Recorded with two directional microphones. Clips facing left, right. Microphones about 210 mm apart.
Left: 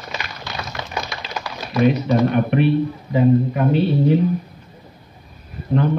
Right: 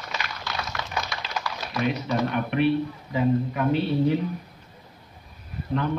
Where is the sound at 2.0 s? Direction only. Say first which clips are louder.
Left 8 dB; 35° left (ahead or behind).